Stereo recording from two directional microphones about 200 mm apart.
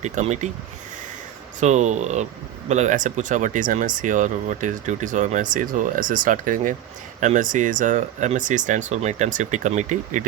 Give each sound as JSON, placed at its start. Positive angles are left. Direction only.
{"t": 0.0, "sound": "speech", "side_deg": -35}
{"t": 1.5, "sound": "speech", "side_deg": -35}